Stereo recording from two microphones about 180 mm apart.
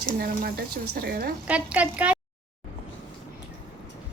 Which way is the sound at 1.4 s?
5° right (ahead or behind).